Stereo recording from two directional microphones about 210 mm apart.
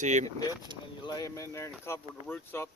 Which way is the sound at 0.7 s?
20° right (ahead or behind).